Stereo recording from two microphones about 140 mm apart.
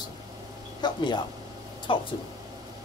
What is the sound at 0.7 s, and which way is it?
Speech, 30° left (ahead or behind).